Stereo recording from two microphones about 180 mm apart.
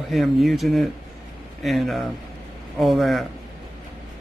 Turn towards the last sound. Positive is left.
turn(degrees=0)  # may be behind; listen again after turning